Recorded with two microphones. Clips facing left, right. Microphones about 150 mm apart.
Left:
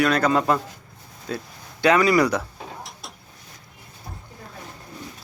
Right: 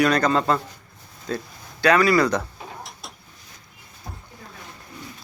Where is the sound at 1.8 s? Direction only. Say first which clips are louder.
Even; 20° left (ahead or behind).